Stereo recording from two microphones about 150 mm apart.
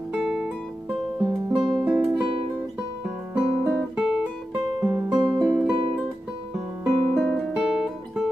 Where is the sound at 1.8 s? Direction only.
15° right (ahead or behind).